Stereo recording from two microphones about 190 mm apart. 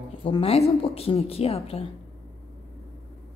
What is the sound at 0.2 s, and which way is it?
A woman's voice, 30° left (ahead or behind).